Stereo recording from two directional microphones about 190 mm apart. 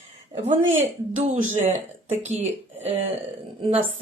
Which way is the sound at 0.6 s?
90° right.